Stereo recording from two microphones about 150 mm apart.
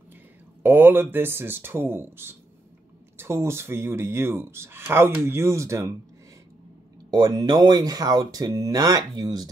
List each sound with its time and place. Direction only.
0.6 s speech: 15° right (ahead or behind)
7.1 s speech: 25° right (ahead or behind)